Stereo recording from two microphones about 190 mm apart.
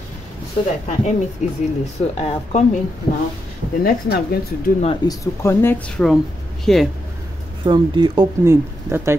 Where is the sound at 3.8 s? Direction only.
50° left (ahead or behind).